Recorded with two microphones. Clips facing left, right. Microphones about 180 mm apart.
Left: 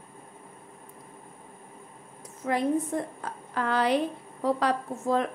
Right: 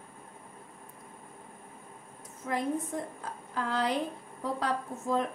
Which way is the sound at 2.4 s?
85° left.